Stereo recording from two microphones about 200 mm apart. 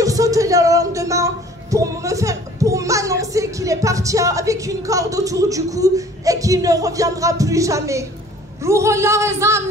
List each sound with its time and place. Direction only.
0.0 s speech: 15° right (ahead or behind)